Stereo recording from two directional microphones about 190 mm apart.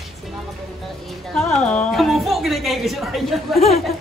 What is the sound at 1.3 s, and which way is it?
Music, 5° left (ahead or behind).